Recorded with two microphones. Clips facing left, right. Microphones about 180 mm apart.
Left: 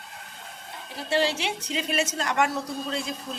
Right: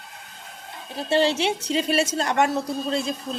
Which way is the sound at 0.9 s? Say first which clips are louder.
Right 4 dB; 25° right (ahead or behind).